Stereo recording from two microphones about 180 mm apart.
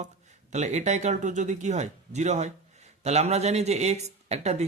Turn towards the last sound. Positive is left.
turn(degrees=-40)  # may be behind; listen again after turning